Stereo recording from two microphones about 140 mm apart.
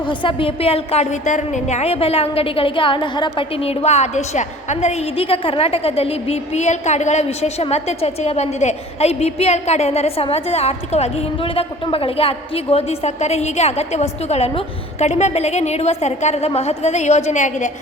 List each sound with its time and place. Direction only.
0.1 s a woman's voice: 35° left (ahead or behind); by 17.7 s 60° left (ahead or behind)